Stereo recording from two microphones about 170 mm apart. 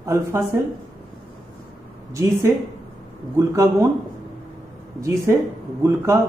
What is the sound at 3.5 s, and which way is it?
Speech, 15° right (ahead or behind).